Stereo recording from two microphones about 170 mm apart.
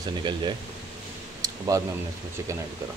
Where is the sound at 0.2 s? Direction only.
25° right (ahead or behind).